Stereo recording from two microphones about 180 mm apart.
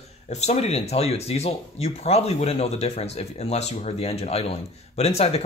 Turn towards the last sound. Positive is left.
turn(degrees=35)  # may be behind; listen again after turning